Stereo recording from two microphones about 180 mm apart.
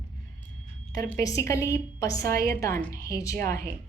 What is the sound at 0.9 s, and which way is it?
A woman's voice, 20° left (ahead or behind).